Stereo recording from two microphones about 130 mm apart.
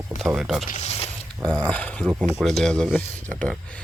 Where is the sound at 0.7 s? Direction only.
60° left (ahead or behind).